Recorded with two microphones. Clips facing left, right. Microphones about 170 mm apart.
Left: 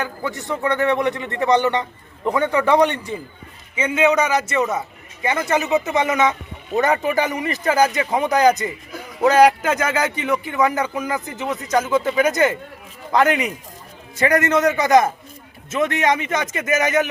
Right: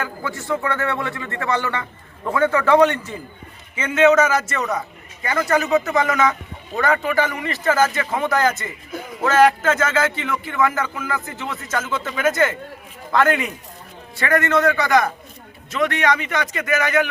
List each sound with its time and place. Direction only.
0.0 s a man's voice: 20° left (ahead or behind)